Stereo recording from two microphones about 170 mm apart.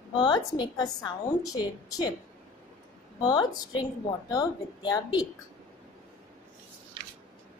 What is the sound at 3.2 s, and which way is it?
A woman's voice, 25° left (ahead or behind).